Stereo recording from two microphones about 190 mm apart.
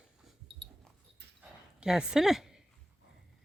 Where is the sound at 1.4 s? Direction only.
5° right (ahead or behind).